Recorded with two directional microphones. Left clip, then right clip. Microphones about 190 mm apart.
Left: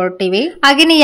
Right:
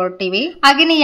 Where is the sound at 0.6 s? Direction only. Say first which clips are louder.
Left 1 dB; 30° left (ahead or behind).